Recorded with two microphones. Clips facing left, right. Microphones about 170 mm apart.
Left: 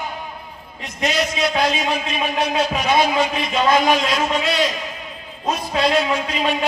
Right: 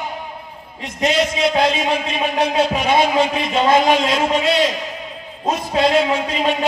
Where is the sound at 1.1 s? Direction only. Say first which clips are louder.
Right 3 dB; 25° right (ahead or behind).